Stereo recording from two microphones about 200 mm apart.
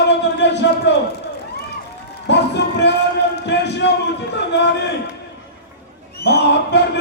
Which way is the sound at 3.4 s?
60° left (ahead or behind).